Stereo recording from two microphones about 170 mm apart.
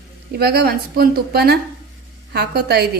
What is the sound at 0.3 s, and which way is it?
A woman's voice, 70° right (ahead or behind).